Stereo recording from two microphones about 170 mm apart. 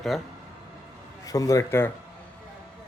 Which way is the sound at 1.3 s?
20° left (ahead or behind).